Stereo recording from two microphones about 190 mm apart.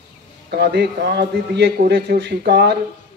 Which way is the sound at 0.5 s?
60° right (ahead or behind).